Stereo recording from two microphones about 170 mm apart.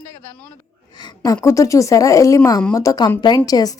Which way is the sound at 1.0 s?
25° left (ahead or behind).